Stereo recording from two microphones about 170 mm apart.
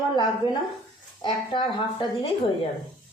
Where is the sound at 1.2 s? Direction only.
30° left (ahead or behind).